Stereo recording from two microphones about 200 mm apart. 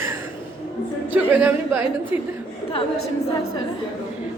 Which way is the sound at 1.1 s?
10° right (ahead or behind).